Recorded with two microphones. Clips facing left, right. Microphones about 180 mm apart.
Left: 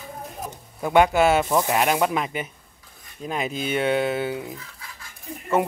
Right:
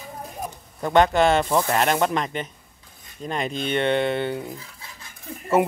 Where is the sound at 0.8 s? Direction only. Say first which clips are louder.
Even; 10° left (ahead or behind).